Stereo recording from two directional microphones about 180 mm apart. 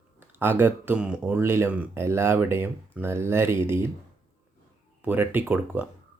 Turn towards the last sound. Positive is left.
turn(degrees=-5)  # may be behind; listen again after turning